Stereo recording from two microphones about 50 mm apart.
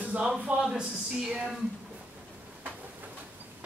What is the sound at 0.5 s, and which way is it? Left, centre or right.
Speech, centre.